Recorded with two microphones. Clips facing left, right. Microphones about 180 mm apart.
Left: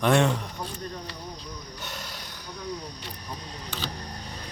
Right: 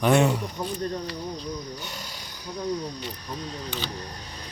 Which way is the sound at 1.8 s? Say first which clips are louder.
Even; centre (ahead or behind).